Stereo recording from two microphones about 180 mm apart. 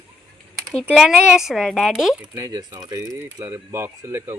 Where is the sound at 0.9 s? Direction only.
5° right (ahead or behind).